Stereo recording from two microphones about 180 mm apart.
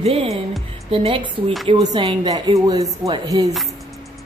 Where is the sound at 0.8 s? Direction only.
30° right (ahead or behind).